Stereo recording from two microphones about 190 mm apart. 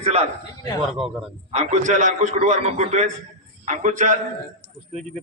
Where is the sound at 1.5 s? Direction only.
35° right (ahead or behind).